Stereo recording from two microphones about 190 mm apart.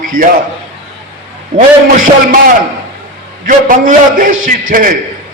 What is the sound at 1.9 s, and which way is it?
A man's voice, 45° right (ahead or behind).